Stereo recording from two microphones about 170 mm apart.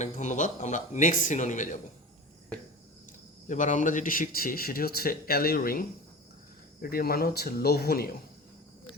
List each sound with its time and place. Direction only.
0.0 s a man's voice: 45° left (ahead or behind)
3.5 s speech: 45° left (ahead or behind)
6.8 s speech: 60° left (ahead or behind)